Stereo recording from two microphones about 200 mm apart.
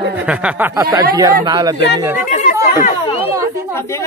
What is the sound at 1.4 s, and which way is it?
Speech, 20° right (ahead or behind).